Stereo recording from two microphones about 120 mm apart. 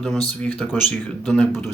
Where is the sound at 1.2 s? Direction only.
Centre (ahead or behind).